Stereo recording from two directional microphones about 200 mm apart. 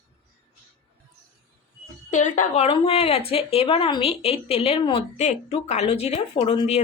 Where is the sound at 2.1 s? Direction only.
40° left (ahead or behind).